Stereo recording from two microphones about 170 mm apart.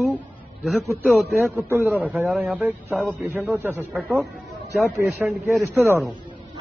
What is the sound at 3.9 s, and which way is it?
Speech, centre (ahead or behind).